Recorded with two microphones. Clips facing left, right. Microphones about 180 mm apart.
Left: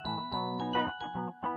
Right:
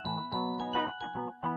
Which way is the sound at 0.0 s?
Centre (ahead or behind).